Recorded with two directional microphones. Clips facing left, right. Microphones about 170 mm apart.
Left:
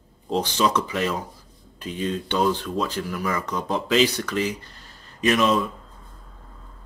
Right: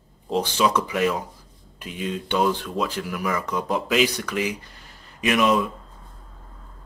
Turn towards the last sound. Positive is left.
turn(degrees=-10)  # may be behind; listen again after turning